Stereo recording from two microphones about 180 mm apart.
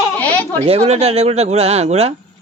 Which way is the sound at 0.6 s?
35° right (ahead or behind).